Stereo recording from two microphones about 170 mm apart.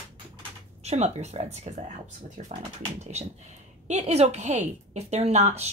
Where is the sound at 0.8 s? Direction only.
40° right (ahead or behind).